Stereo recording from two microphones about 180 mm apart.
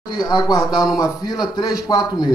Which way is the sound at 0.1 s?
25° left (ahead or behind).